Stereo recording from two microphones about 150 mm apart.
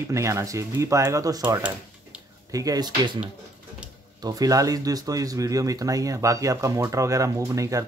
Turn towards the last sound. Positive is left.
turn(degrees=-20)  # may be behind; listen again after turning